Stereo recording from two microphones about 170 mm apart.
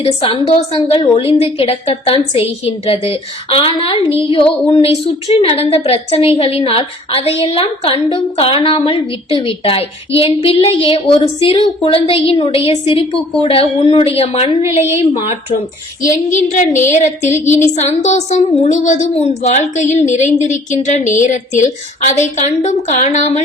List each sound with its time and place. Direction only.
0.0 s a woman's voice: 35° left (ahead or behind)
16.3 s a woman's voice: 45° left (ahead or behind)